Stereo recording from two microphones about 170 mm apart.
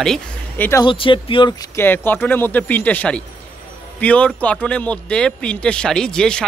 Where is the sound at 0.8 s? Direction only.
30° left (ahead or behind).